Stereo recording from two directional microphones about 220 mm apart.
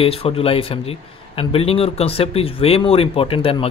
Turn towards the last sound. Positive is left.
turn(degrees=25)  # may be behind; listen again after turning